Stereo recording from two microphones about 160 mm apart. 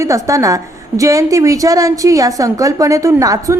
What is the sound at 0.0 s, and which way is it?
A woman's voice, 20° right (ahead or behind).